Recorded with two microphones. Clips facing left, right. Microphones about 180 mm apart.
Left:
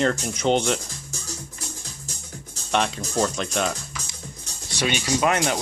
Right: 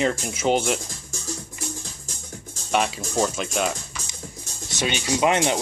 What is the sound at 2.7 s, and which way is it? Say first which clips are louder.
Speech: right 1 dB; 5° right (ahead or behind).